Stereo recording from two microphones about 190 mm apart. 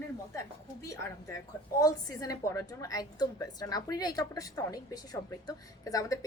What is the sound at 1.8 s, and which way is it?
A woman's voice, 20° left (ahead or behind).